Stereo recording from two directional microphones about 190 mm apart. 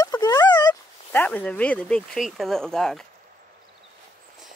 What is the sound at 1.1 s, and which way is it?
Speech, 10° left (ahead or behind).